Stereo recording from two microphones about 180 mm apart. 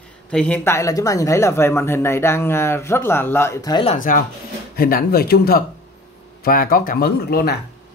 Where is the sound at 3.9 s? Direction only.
45° left (ahead or behind).